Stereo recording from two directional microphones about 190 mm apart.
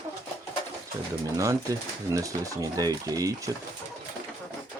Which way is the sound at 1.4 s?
15° right (ahead or behind).